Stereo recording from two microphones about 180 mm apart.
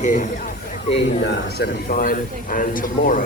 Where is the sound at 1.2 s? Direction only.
65° left (ahead or behind).